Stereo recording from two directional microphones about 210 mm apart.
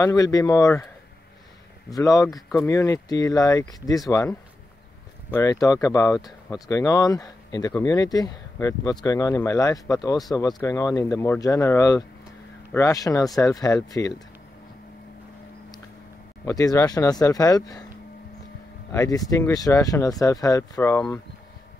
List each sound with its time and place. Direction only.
0.0 s speech: 15° left (ahead or behind)
1.9 s speech: 15° left (ahead or behind)
16.4 s speech: 15° left (ahead or behind)
18.9 s speech: 15° left (ahead or behind)